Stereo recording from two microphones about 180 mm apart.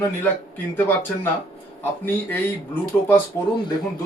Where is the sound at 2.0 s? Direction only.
10° left (ahead or behind).